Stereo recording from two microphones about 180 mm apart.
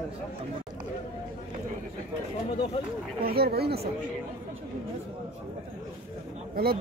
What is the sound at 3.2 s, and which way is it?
Speech, 60° right (ahead or behind).